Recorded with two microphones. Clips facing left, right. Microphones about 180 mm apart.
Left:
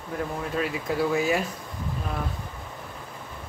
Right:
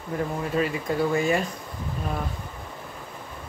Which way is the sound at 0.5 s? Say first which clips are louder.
Right 2 dB; centre (ahead or behind).